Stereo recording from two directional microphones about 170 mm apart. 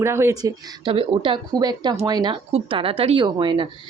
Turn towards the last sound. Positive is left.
turn(degrees=-30)  # may be behind; listen again after turning